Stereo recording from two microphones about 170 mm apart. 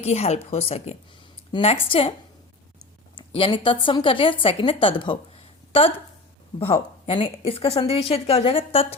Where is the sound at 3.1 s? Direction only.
30° left (ahead or behind).